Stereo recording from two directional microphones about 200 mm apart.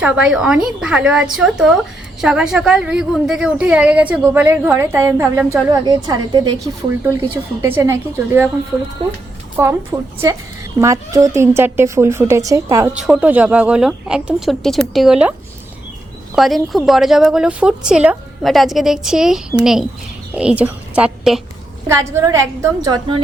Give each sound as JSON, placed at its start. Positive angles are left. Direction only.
{"t": 0.0, "sound": "a woman's voice", "side_deg": -5}
{"t": 7.6, "sound": "a woman's voice", "side_deg": -10}
{"t": 9.6, "sound": "a woman's voice", "side_deg": -10}
{"t": 16.3, "sound": "a woman's voice", "side_deg": 0}
{"t": 21.8, "sound": "a woman's voice", "side_deg": -15}